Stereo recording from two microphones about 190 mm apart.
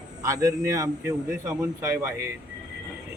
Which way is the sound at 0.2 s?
20° right (ahead or behind).